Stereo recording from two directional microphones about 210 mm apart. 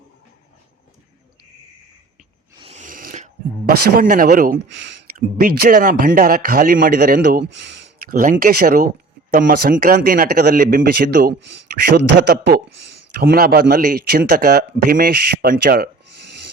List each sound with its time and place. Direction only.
2.6 s a sound: 30° right (ahead or behind)
3.9 s speech: 40° right (ahead or behind)
4.7 s speech: 55° right (ahead or behind)
5.4 s speech: 45° right (ahead or behind)
7.4 s speech: 55° right (ahead or behind)
8.1 s speech: 40° right (ahead or behind)